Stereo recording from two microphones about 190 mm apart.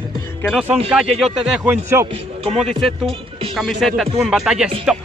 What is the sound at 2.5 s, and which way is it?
Speech, centre (ahead or behind).